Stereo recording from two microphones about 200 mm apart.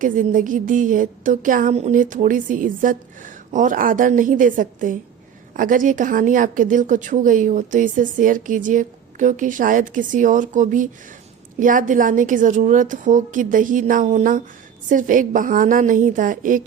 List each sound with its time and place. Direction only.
0.0 s speech: 40° right (ahead or behind)